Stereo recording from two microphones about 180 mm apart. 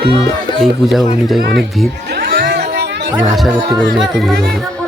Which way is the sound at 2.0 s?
70° right (ahead or behind).